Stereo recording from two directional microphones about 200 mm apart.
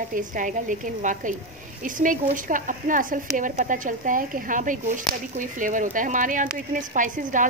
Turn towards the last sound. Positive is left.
turn(degrees=-40)  # may be behind; listen again after turning